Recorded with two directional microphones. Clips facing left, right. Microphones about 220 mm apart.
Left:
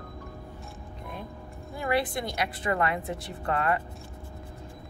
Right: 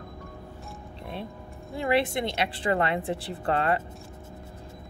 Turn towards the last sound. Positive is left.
turn(degrees=-30)  # may be behind; listen again after turning